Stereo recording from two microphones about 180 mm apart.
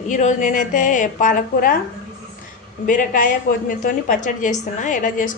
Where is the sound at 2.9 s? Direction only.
50° left (ahead or behind).